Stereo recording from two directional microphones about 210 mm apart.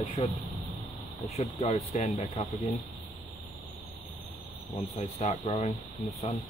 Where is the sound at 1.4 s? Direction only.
30° left (ahead or behind).